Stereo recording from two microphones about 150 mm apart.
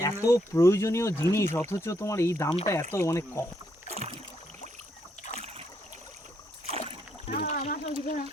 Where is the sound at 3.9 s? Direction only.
45° right (ahead or behind).